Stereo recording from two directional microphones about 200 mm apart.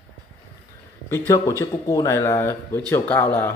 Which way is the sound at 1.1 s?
15° left (ahead or behind).